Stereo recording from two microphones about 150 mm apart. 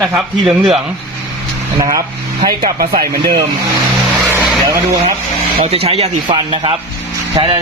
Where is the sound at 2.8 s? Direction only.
90° right.